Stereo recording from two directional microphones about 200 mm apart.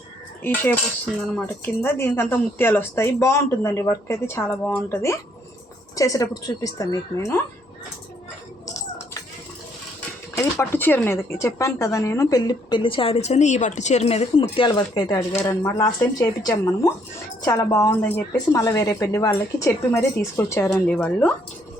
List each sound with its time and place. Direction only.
0.4 s speech: 10° left (ahead or behind)
10.3 s speech: 15° left (ahead or behind)